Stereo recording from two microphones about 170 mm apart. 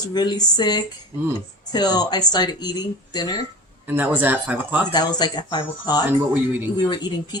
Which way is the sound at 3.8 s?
10° right (ahead or behind).